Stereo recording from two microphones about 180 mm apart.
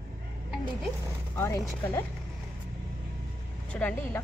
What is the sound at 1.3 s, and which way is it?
Speech, 15° left (ahead or behind).